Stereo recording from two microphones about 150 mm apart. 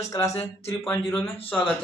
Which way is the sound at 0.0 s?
20° left (ahead or behind).